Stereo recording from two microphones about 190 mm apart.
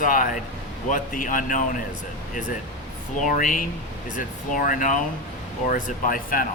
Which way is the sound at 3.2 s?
45° left (ahead or behind).